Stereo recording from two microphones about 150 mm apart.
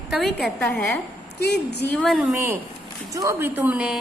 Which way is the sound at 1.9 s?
5° left (ahead or behind).